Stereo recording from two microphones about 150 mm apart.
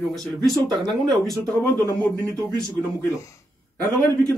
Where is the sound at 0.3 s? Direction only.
Centre (ahead or behind).